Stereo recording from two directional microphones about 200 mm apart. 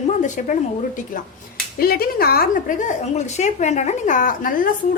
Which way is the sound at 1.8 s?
50° left (ahead or behind).